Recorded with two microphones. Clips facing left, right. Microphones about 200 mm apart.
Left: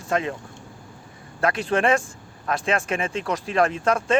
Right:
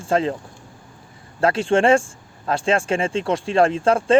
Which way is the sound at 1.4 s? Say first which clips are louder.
Right 5 dB; 30° right (ahead or behind).